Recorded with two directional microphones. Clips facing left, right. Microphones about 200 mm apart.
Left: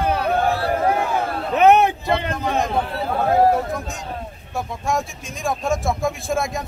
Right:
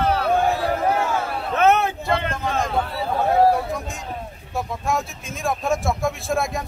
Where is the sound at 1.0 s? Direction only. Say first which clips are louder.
Left 1 dB; 15° left (ahead or behind).